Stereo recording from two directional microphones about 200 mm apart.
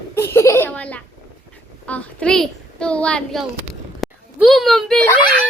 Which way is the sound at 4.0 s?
Centre (ahead or behind).